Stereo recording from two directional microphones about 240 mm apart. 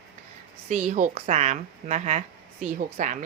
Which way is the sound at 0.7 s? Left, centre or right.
Right.